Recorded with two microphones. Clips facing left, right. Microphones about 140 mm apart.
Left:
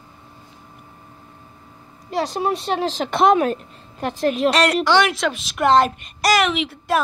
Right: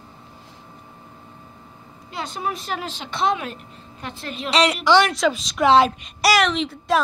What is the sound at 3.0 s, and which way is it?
A woman's voice, 50° left (ahead or behind).